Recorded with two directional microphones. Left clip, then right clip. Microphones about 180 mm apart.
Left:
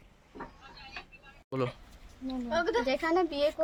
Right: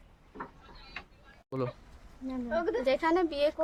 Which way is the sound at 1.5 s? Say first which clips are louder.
Left 2 dB; centre (ahead or behind).